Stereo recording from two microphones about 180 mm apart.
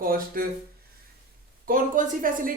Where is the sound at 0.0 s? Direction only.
55° right (ahead or behind).